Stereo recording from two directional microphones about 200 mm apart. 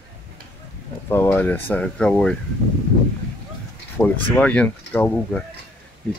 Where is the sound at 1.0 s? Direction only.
10° left (ahead or behind).